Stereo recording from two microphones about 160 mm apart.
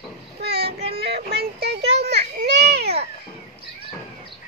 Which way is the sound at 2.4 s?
90° right.